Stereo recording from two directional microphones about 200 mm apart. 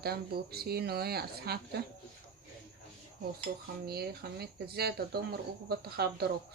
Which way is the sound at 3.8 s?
50° right (ahead or behind).